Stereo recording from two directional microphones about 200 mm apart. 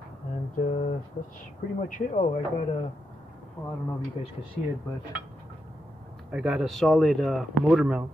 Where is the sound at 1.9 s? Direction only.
40° left (ahead or behind).